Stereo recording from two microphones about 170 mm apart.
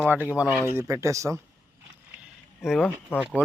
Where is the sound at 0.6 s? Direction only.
15° right (ahead or behind).